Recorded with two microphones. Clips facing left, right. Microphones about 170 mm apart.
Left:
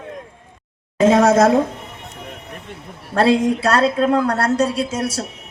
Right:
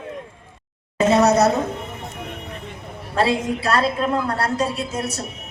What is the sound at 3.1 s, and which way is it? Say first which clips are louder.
A woman's voice: left 5 dB; 70° left (ahead or behind).